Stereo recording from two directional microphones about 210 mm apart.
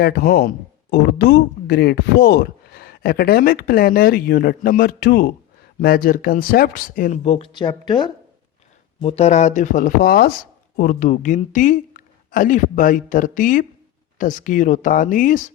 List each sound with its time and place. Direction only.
0.0 s speech: 45° left (ahead or behind)